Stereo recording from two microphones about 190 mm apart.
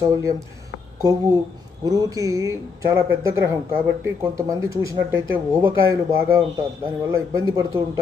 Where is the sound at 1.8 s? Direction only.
20° right (ahead or behind).